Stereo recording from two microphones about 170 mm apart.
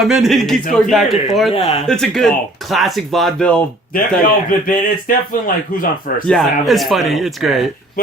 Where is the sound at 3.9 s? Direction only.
55° left (ahead or behind).